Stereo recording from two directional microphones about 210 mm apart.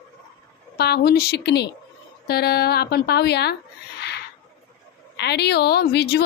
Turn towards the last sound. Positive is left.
turn(degrees=50)  # may be behind; listen again after turning